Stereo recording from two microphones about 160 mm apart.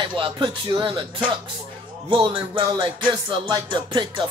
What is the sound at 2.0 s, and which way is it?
Music, 35° right (ahead or behind).